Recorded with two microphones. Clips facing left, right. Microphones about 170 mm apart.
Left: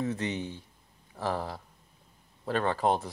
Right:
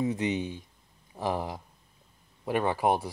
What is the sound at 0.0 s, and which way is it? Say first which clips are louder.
Speech: right 3 dB; 15° right (ahead or behind).